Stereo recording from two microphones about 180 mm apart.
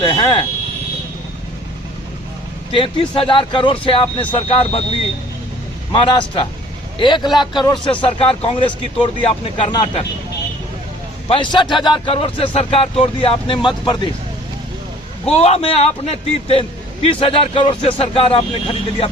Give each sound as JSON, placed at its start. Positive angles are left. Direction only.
{"t": 0.0, "sound": "speech", "side_deg": 25}
{"t": 2.7, "sound": "speech", "side_deg": 30}
{"t": 5.9, "sound": "speech", "side_deg": 25}
{"t": 11.3, "sound": "speech", "side_deg": 25}
{"t": 15.3, "sound": "a man's voice", "side_deg": 35}